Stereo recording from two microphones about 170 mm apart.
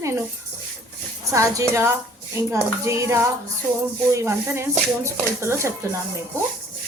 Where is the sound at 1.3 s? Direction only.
20° right (ahead or behind).